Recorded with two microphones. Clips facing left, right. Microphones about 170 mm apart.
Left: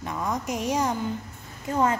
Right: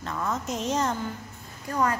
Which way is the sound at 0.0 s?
15° left (ahead or behind).